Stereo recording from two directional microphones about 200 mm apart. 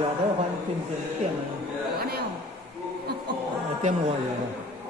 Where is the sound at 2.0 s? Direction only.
50° right (ahead or behind).